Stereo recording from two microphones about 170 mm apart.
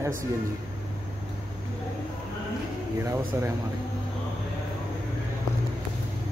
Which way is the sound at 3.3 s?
15° right (ahead or behind).